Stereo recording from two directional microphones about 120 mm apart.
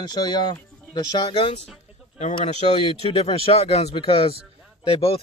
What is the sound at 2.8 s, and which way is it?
Speech, 50° left (ahead or behind).